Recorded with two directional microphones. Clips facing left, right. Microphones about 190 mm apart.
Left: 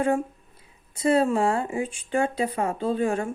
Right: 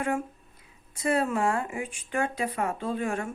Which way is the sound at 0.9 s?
30° left (ahead or behind).